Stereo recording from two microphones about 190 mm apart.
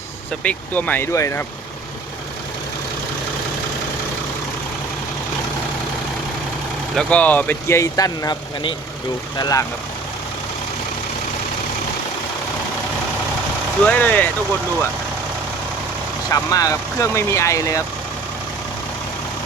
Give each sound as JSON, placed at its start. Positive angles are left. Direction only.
{"t": 0.4, "sound": "speech", "side_deg": 10}
{"t": 6.9, "sound": "speech", "side_deg": 5}
{"t": 13.8, "sound": "speech", "side_deg": 10}
{"t": 16.3, "sound": "speech", "side_deg": 20}